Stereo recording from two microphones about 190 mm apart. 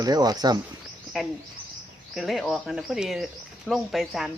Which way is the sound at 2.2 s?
Centre (ahead or behind).